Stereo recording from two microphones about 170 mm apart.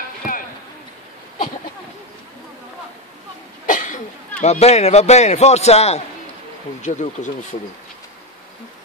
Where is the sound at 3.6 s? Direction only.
50° left (ahead or behind).